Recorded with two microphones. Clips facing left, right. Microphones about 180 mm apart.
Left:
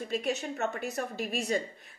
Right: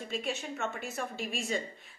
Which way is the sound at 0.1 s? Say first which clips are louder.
Left 4 dB; 40° left (ahead or behind).